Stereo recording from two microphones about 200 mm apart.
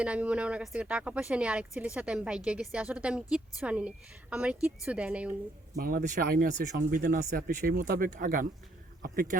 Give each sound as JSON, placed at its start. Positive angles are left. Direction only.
{"t": 0.0, "sound": "a woman's voice", "side_deg": -5}
{"t": 5.7, "sound": "speech", "side_deg": -45}